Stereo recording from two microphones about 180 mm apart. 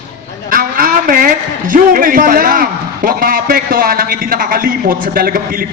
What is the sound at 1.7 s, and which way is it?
A man's voice, 50° right (ahead or behind).